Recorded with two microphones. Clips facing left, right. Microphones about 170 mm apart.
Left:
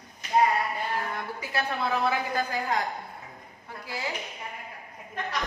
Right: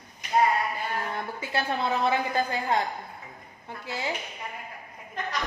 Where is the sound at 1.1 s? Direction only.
25° right (ahead or behind).